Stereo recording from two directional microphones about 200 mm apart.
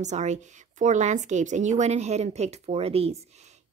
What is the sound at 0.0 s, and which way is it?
A woman's voice, 35° right (ahead or behind).